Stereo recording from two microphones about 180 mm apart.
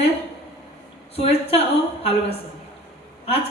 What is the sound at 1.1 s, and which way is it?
A woman's voice, 35° left (ahead or behind).